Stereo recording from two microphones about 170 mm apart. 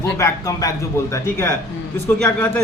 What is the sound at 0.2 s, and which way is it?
A man's voice, 20° left (ahead or behind).